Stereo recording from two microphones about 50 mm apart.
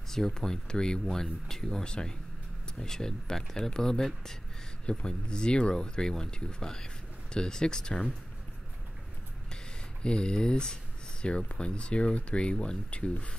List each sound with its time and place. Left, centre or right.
0.1 s speech: centre
10.0 s speech: centre